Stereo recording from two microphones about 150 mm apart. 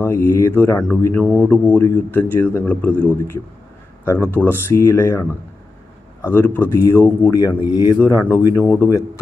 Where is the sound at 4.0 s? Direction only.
15° left (ahead or behind).